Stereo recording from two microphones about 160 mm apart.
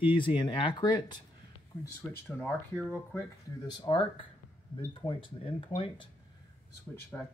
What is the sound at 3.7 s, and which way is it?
Speech, 30° left (ahead or behind).